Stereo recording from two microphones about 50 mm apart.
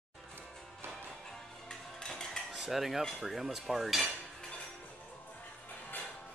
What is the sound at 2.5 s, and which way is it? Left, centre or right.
Cutlery, centre.